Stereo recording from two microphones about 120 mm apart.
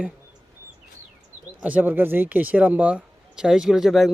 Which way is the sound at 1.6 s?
15° right (ahead or behind).